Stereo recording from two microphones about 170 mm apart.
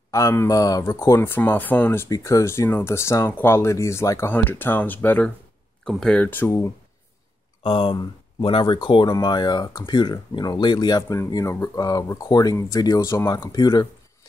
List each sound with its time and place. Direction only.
0.1 s speech: 15° left (ahead or behind)
7.6 s speech: 30° left (ahead or behind)